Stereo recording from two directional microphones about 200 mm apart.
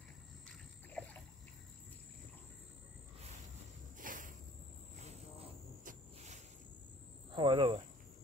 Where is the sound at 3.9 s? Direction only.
40° right (ahead or behind).